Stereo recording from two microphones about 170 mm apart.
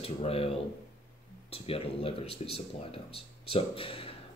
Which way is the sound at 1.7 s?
35° left (ahead or behind).